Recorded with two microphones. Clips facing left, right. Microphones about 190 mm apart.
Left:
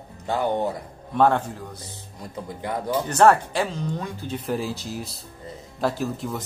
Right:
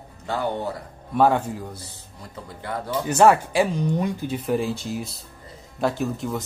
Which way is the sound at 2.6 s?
15° left (ahead or behind).